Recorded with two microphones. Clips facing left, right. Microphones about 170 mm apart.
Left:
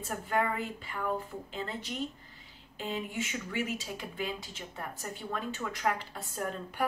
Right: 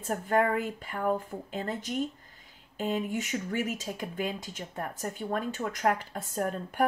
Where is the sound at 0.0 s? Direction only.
45° right (ahead or behind).